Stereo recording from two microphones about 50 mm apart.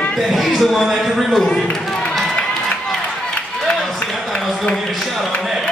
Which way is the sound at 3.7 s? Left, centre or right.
Centre.